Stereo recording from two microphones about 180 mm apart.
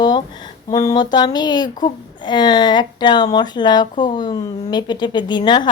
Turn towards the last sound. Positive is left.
turn(degrees=25)  # may be behind; listen again after turning